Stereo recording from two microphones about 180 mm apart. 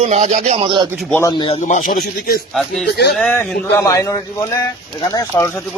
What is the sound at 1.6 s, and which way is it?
Speech, 40° left (ahead or behind).